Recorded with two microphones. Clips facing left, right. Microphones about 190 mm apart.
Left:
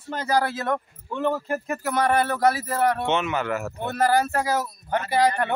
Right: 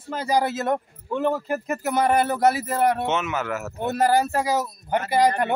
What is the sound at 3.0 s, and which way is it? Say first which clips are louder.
Speech: left 1 dB; 5° right (ahead or behind).